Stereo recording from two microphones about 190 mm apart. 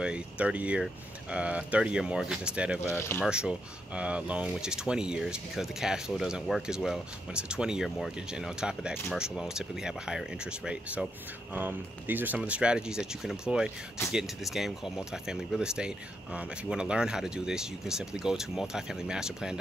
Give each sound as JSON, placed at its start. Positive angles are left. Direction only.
{"t": 0.0, "sound": "speech", "side_deg": -5}